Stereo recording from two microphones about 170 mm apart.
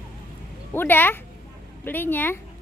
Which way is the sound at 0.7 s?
10° left (ahead or behind).